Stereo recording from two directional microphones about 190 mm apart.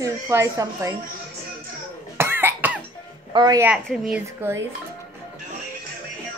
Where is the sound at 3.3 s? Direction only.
20° right (ahead or behind).